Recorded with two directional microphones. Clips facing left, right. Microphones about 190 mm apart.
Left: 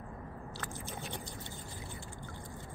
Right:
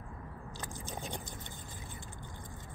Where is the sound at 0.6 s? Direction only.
15° right (ahead or behind).